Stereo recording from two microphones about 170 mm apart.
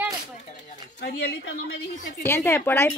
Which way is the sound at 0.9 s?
75° left (ahead or behind).